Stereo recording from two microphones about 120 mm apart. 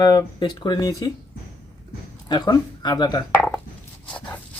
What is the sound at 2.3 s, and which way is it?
Speech, 35° left (ahead or behind).